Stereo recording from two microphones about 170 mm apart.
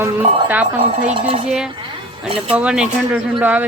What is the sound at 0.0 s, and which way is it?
Speech, 10° right (ahead or behind).